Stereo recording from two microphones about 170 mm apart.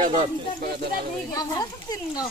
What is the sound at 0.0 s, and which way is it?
Speech, 45° right (ahead or behind).